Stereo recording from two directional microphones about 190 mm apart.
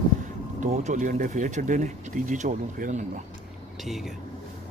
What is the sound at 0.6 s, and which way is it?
Speech, 40° right (ahead or behind).